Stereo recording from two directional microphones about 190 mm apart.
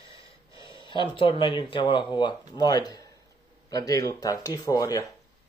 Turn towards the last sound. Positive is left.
turn(degrees=20)  # may be behind; listen again after turning